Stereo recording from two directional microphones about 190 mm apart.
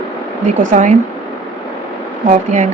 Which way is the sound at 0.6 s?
45° right (ahead or behind).